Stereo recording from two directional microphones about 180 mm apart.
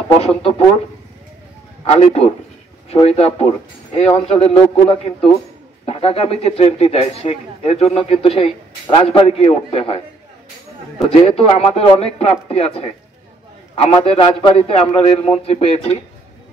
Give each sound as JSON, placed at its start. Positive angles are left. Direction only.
{"t": 0.2, "sound": "speech", "side_deg": 35}
{"t": 1.9, "sound": "speech", "side_deg": 35}
{"t": 11.1, "sound": "speech", "side_deg": 35}